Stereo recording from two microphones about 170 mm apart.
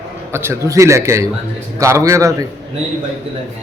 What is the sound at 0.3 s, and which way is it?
A man's voice, 15° right (ahead or behind).